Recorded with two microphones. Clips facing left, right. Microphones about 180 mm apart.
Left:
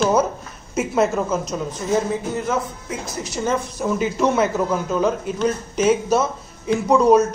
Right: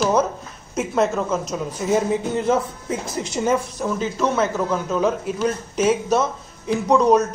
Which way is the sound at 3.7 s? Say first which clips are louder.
Left 2 dB; 10° left (ahead or behind).